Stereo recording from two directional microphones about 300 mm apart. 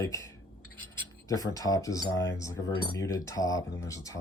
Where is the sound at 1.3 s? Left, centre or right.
Centre.